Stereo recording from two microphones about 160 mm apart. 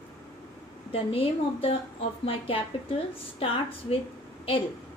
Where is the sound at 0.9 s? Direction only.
35° left (ahead or behind).